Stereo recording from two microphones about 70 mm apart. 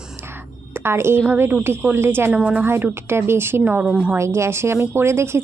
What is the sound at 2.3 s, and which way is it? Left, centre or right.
Speech, centre.